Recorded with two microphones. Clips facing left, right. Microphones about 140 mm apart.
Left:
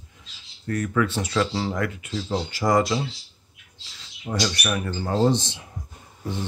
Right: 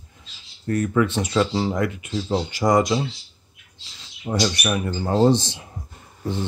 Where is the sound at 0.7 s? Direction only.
25° right (ahead or behind).